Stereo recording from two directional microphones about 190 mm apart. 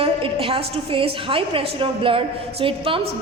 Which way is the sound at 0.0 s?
30° right (ahead or behind).